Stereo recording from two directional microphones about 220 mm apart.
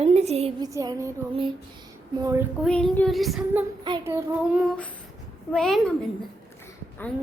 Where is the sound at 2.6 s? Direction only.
5° left (ahead or behind).